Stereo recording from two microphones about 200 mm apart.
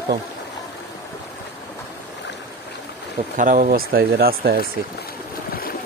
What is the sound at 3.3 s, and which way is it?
Speech, 40° right (ahead or behind).